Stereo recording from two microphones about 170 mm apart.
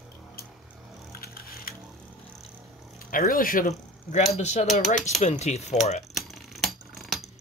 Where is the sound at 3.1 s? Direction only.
55° left (ahead or behind).